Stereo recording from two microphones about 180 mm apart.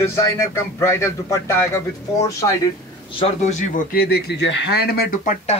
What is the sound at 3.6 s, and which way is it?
Speech, 50° left (ahead or behind).